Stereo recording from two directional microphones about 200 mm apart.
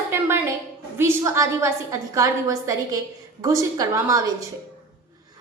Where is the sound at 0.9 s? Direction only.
15° right (ahead or behind).